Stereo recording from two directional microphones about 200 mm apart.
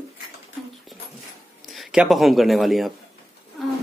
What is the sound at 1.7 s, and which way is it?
Speech, centre (ahead or behind).